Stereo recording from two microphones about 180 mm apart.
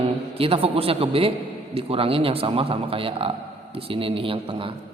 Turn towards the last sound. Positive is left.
turn(degrees=-30)  # may be behind; listen again after turning